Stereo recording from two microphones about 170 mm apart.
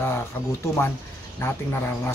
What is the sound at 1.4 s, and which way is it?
Speech, 15° left (ahead or behind).